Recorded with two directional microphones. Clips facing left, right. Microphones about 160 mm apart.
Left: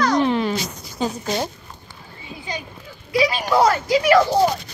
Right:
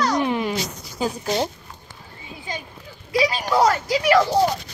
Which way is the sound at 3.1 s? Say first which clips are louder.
Left 2 dB; 40° right (ahead or behind).